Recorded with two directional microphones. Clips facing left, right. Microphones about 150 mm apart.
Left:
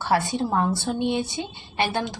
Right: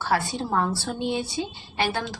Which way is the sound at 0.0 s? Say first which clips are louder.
Left 3 dB; 20° left (ahead or behind).